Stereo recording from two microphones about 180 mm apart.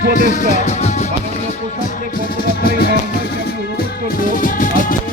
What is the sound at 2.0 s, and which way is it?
Music, 55° left (ahead or behind).